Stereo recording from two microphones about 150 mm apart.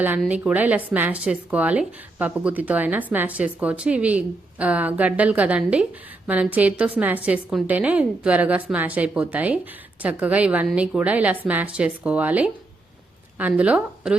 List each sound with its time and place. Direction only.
0.3 s speech: 10° right (ahead or behind)
13.5 s speech: 5° right (ahead or behind)